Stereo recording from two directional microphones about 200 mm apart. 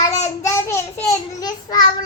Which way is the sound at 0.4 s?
15° left (ahead or behind).